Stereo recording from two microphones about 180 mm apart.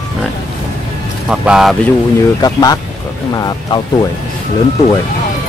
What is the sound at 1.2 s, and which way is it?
Speech, 5° right (ahead or behind).